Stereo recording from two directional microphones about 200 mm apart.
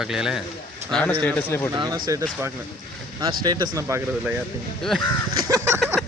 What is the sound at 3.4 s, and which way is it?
Speech, 20° right (ahead or behind).